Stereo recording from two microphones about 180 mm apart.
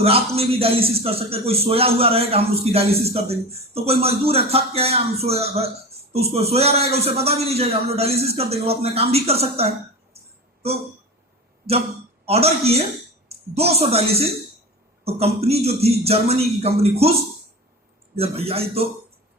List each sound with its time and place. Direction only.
0.0 s speech: 35° right (ahead or behind)
12.2 s a woman's voice: 35° right (ahead or behind)
18.2 s speech: 35° right (ahead or behind)